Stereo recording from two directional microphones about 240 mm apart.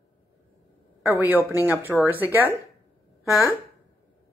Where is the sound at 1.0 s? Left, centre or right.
Centre.